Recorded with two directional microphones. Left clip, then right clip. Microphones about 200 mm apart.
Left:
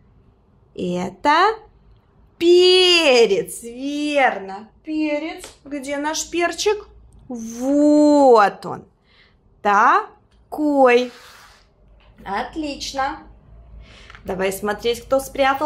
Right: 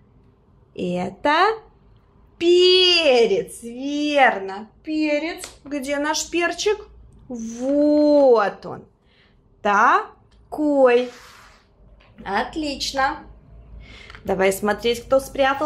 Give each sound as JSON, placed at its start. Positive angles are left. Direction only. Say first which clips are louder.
{"t": 0.7, "sound": "speech", "louder": "left 1 dB", "side_deg": 5}
{"t": 4.8, "sound": "a woman's voice", "louder": "right 1 dB", "side_deg": -20}
{"t": 9.6, "sound": "a woman's voice", "louder": "left 2 dB", "side_deg": 5}
{"t": 12.2, "sound": "a woman's voice", "louder": "right 1 dB", "side_deg": -15}
{"t": 13.7, "sound": "a sound", "louder": "right 2 dB", "side_deg": -10}
{"t": 14.2, "sound": "a woman's voice", "louder": "right 3 dB", "side_deg": -15}